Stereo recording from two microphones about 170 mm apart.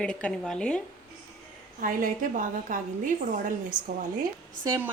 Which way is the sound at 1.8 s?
50° right (ahead or behind).